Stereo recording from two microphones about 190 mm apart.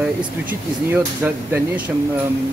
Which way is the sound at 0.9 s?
10° right (ahead or behind).